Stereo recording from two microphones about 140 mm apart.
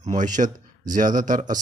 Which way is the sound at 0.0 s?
65° right (ahead or behind).